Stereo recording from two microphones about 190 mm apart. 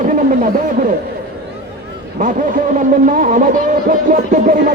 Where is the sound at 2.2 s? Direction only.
45° right (ahead or behind).